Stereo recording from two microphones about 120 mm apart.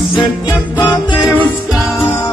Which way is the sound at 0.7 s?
40° left (ahead or behind).